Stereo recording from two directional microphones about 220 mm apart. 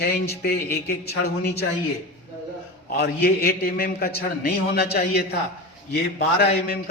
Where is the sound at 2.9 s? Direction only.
45° left (ahead or behind).